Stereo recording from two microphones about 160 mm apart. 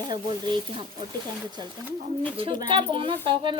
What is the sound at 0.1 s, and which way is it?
Speech, 30° right (ahead or behind).